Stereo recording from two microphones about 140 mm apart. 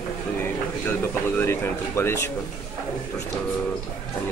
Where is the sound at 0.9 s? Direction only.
15° left (ahead or behind).